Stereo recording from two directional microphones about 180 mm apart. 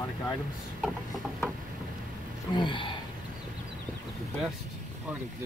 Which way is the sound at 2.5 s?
25° left (ahead or behind).